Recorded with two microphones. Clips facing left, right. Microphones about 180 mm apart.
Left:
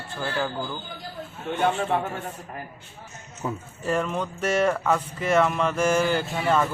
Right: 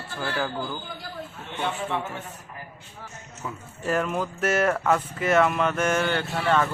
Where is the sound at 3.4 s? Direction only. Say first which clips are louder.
Left 6 dB; 30° left (ahead or behind).